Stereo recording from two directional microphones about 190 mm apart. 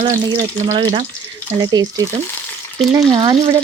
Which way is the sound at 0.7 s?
40° right (ahead or behind).